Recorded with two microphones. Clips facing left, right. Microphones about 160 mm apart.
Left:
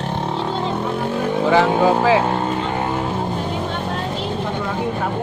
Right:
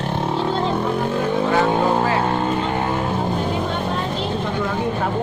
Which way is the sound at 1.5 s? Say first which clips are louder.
Left 5 dB; 90° left.